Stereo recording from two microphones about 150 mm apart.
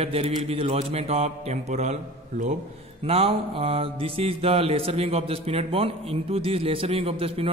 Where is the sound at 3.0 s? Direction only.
40° right (ahead or behind).